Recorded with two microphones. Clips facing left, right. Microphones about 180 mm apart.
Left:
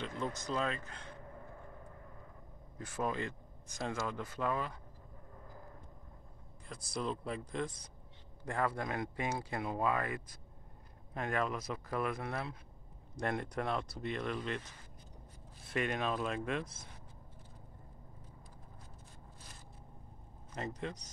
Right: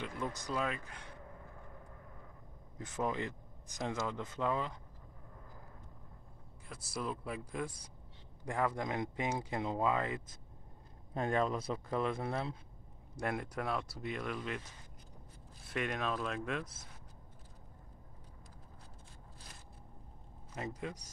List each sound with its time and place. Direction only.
0.0 s speech: 15° right (ahead or behind)
2.8 s speech: 20° right (ahead or behind)
6.7 s speech: 5° right (ahead or behind); by 12.5 s 25° right (ahead or behind)
13.1 s speech: 5° right (ahead or behind)
15.7 s speech: centre (ahead or behind)
20.5 s speech: 5° right (ahead or behind)